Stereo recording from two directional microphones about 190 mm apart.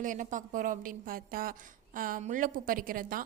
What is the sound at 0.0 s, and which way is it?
A woman's voice, 40° right (ahead or behind).